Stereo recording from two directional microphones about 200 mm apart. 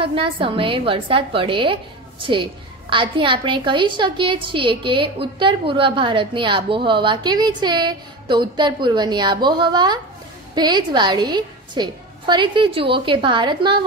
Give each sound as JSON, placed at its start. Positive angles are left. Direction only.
{"t": 0.0, "sound": "a woman's voice", "side_deg": -25}